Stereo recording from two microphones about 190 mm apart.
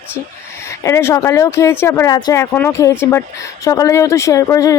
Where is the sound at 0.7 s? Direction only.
15° left (ahead or behind).